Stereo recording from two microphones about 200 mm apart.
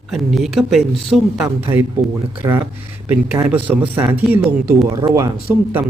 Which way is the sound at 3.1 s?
10° right (ahead or behind).